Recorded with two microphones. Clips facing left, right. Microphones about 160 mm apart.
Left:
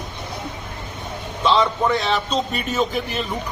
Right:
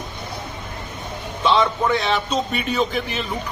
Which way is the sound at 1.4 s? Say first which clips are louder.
Even; centre (ahead or behind).